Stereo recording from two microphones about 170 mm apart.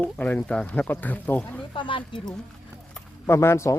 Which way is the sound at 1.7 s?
30° left (ahead or behind).